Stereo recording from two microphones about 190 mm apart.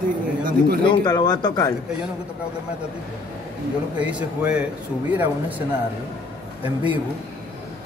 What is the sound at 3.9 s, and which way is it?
Speech, 5° right (ahead or behind).